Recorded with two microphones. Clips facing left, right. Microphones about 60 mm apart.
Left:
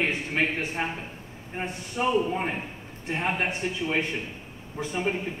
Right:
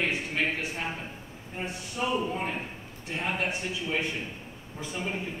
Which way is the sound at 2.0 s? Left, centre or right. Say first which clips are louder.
Left 4 dB; left.